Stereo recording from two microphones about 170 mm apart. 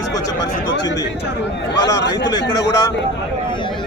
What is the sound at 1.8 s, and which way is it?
Speech, 85° left.